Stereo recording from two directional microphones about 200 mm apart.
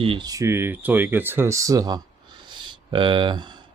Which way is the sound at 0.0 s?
25° right (ahead or behind).